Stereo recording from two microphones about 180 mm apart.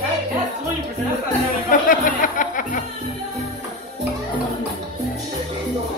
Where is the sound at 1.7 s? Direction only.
50° left (ahead or behind).